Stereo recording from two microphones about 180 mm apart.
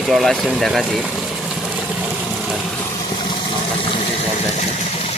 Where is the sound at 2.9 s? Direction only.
25° left (ahead or behind).